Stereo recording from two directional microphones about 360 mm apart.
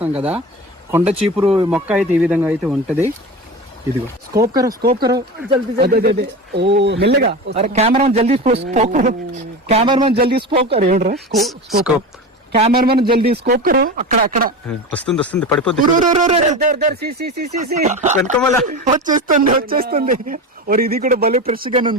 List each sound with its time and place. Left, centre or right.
0.9 s speech: centre
1.7 s speech: centre
4.3 s speech: centre
4.8 s speech: right
5.0 s speech: centre
5.7 s speech: right
10.2 s speech: right
11.3 s speech: centre
12.5 s speech: right
14.7 s speech: centre
16.0 s speech: right